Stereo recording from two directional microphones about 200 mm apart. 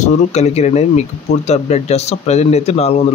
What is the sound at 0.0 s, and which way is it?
Speech, 35° left (ahead or behind).